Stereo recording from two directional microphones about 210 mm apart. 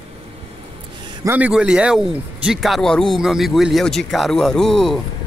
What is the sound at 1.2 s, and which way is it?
Speech, 10° right (ahead or behind).